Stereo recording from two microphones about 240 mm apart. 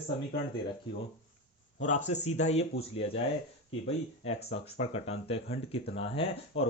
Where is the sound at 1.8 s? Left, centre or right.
Left.